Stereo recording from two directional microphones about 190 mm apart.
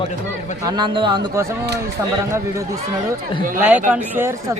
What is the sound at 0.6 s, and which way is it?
Speech, 20° right (ahead or behind).